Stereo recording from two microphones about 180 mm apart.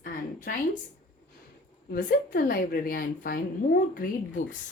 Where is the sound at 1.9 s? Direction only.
50° left (ahead or behind).